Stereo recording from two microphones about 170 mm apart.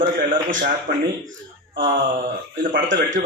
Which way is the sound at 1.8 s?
55° right (ahead or behind).